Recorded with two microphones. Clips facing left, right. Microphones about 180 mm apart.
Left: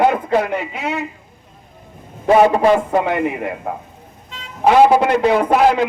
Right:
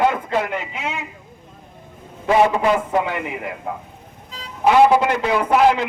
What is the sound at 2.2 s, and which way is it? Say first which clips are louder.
A man's voice: left 4 dB; 35° left (ahead or behind).